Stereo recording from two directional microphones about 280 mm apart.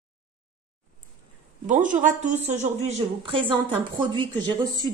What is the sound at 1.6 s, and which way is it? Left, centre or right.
A woman's voice, right.